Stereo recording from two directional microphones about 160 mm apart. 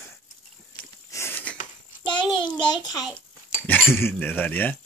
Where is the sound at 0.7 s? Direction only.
15° left (ahead or behind).